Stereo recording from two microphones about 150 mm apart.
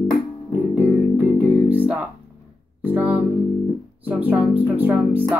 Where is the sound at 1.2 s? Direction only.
10° right (ahead or behind).